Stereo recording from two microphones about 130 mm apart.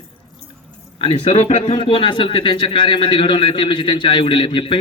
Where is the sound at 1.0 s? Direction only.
50° left (ahead or behind).